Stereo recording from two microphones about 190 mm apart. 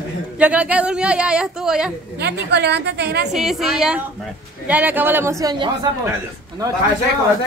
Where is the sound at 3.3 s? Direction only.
Centre (ahead or behind); by 5.9 s 25° right (ahead or behind).